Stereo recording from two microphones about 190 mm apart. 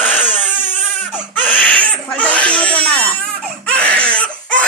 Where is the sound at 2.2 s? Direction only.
5° left (ahead or behind).